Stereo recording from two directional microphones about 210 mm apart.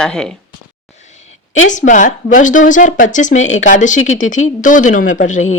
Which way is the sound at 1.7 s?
35° left (ahead or behind).